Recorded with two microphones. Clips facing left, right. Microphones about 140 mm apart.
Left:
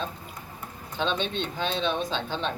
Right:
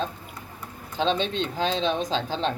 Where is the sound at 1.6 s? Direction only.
35° right (ahead or behind).